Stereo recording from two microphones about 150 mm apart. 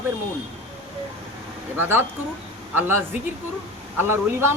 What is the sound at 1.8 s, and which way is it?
A man's voice, 15° right (ahead or behind).